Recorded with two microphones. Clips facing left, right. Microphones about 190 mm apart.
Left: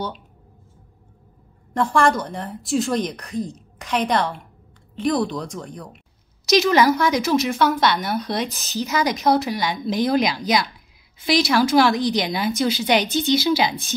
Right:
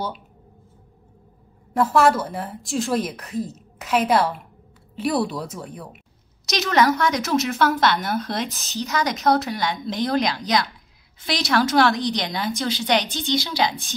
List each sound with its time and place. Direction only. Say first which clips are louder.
1.7 s a woman's voice: right 1 dB; 5° right (ahead or behind)